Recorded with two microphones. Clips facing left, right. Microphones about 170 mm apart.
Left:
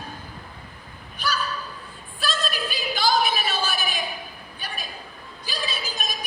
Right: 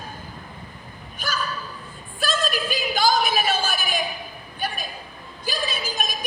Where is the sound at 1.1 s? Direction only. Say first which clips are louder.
Left 1 dB; 45° right (ahead or behind).